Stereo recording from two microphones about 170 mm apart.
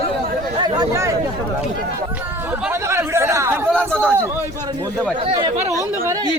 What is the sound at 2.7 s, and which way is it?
Chatter, 15° right (ahead or behind).